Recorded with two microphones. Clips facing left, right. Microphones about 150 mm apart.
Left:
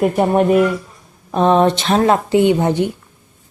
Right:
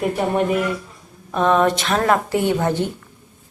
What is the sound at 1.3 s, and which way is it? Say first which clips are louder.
Speech: left 4 dB; 30° left (ahead or behind).